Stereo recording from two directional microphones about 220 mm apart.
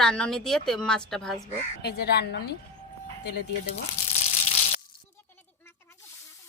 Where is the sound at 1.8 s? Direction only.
45° left (ahead or behind).